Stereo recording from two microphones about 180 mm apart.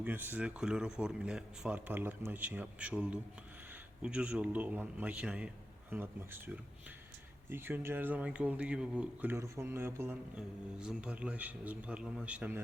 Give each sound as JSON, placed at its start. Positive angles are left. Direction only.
{"t": 0.0, "sound": "speech", "side_deg": -10}